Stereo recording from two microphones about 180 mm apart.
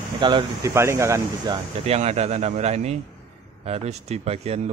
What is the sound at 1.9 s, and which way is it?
A man's voice, 35° right (ahead or behind).